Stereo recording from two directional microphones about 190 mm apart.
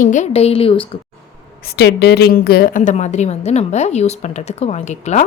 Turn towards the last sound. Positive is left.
turn(degrees=35)  # may be behind; listen again after turning